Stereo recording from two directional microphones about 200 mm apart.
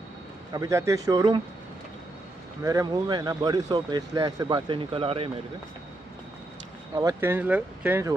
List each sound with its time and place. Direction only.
0.5 s speech: 15° right (ahead or behind)
2.6 s speech: 15° right (ahead or behind)
7.0 s speech: 15° right (ahead or behind)